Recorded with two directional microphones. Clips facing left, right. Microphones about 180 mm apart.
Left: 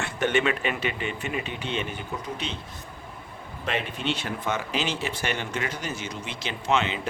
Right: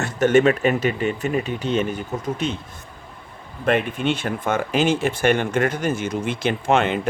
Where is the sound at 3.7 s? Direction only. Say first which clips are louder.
Right 8 dB; 50° right (ahead or behind).